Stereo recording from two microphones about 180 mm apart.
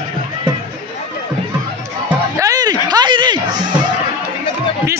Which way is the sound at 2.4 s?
20° right (ahead or behind).